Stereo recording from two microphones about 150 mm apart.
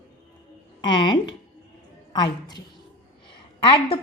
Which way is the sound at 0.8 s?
30° left (ahead or behind).